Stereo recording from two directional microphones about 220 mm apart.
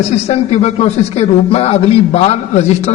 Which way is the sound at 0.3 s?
30° left (ahead or behind).